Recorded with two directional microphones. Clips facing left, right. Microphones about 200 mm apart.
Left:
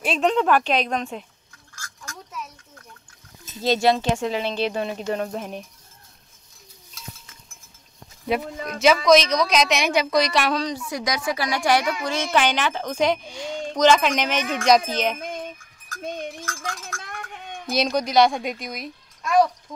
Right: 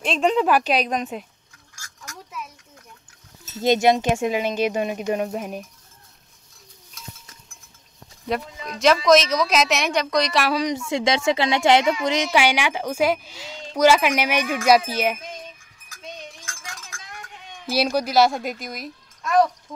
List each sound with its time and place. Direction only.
0.0 s a woman's voice: centre (ahead or behind)
3.6 s a woman's voice: 20° right (ahead or behind)
8.3 s a woman's voice: 5° left (ahead or behind)
10.9 s a woman's voice: 25° right (ahead or behind); by 15.1 s 10° right (ahead or behind)
15.1 s a sound: 50° left (ahead or behind)
17.7 s speech: 5° right (ahead or behind)